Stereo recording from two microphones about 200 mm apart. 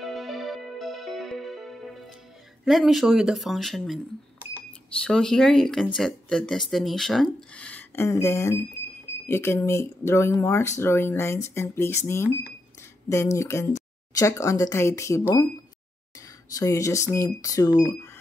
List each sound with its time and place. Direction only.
0.0 s music: centre (ahead or behind)
2.6 s speech: centre (ahead or behind)
16.4 s speech: 15° left (ahead or behind)